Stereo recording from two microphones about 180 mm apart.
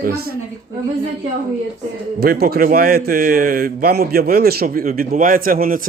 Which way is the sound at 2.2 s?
60° right (ahead or behind).